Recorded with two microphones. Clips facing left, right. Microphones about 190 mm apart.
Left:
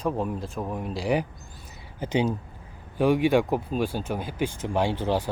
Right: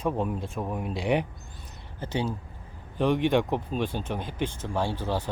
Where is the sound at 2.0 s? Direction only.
15° left (ahead or behind).